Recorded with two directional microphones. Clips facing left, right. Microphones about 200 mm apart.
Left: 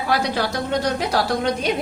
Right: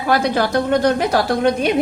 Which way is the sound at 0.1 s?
55° right (ahead or behind).